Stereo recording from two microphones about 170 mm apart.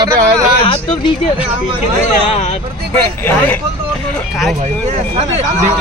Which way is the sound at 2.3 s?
40° left (ahead or behind).